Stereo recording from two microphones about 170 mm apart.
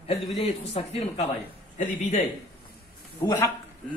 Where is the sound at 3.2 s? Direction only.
20° left (ahead or behind).